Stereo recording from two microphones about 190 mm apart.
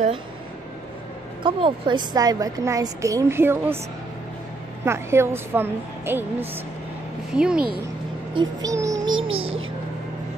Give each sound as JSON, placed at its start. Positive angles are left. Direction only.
{"t": 1.4, "sound": "a woman's voice", "side_deg": -25}
{"t": 4.8, "sound": "a woman's voice", "side_deg": -15}
{"t": 8.6, "sound": "music", "side_deg": -15}
{"t": 9.3, "sound": "a child's voice", "side_deg": -30}